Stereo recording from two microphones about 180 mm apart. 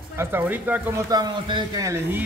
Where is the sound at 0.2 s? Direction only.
10° right (ahead or behind).